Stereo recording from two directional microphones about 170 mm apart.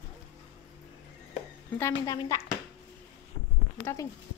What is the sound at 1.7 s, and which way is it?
Speech, 20° left (ahead or behind).